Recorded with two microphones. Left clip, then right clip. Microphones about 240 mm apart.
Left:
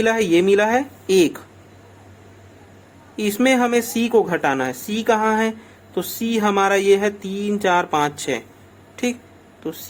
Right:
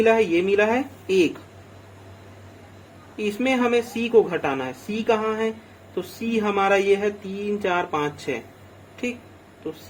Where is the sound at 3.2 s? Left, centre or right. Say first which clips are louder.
Left 5 dB; left.